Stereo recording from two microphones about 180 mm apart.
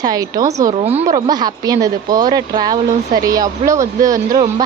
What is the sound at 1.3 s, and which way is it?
A woman's voice, 20° right (ahead or behind).